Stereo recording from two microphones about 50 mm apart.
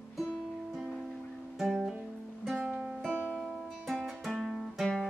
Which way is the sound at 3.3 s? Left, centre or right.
Centre.